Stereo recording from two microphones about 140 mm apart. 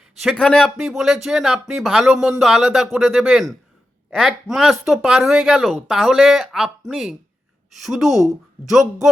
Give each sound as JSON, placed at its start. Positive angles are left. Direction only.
{"t": 0.2, "sound": "speech", "side_deg": 5}